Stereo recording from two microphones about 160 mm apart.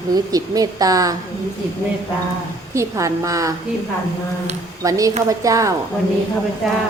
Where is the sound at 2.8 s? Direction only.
20° right (ahead or behind).